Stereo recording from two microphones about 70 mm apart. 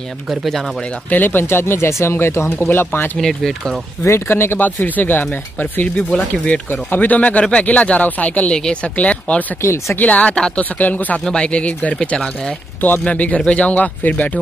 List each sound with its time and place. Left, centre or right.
0.3 s speech: centre
1.1 s speech: left
3.2 s speech: centre
4.0 s speech: left; by 8.5 s centre
8.5 s speech: centre
9.6 s speech: left
9.9 s speech: left